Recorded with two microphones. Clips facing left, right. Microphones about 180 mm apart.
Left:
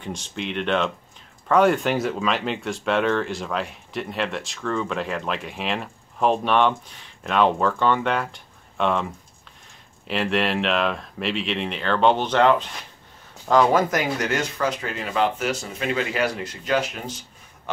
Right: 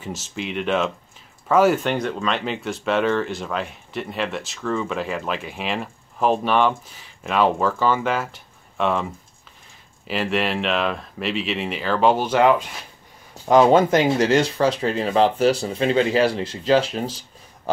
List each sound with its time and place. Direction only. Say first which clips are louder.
0.0 s speech: right 1 dB; 5° right (ahead or behind)
10.0 s speech: even; centre (ahead or behind)
13.5 s speech: right 4 dB; 25° right (ahead or behind)